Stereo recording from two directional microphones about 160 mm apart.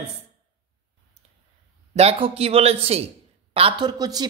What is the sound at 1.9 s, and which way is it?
Speech, 40° right (ahead or behind).